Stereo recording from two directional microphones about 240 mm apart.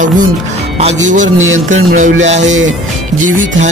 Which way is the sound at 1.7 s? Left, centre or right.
Right.